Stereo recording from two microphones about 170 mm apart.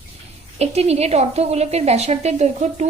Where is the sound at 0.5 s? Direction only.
40° right (ahead or behind).